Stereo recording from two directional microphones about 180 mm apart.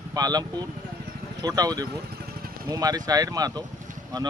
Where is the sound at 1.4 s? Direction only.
20° right (ahead or behind).